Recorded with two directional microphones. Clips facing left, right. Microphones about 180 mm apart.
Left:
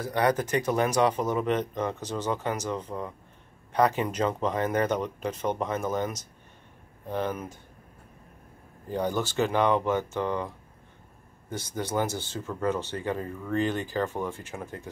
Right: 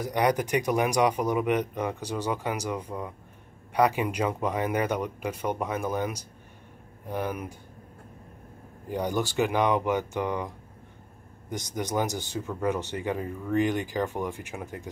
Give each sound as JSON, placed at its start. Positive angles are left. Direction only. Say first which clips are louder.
{"t": 0.0, "sound": "speech", "louder": "even", "side_deg": -15}
{"t": 8.8, "sound": "speech", "louder": "even", "side_deg": -15}
{"t": 11.5, "sound": "speech", "louder": "even", "side_deg": -15}